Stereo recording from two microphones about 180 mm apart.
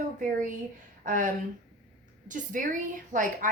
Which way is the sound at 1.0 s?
45° right (ahead or behind).